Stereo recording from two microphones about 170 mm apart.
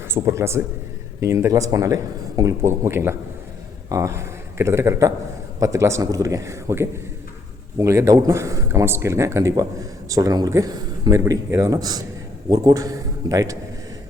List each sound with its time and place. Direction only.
0.1 s speech: 15° right (ahead or behind)